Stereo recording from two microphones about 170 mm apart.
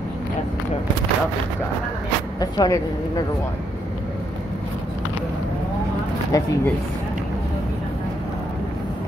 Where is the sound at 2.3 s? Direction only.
25° left (ahead or behind).